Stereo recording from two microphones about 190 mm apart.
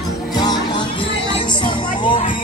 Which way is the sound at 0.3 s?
20° left (ahead or behind).